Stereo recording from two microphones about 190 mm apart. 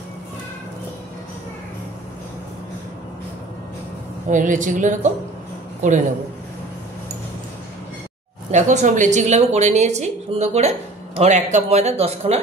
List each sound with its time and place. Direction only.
4.3 s a woman's voice: 45° right (ahead or behind)
8.5 s a woman's voice: 40° right (ahead or behind)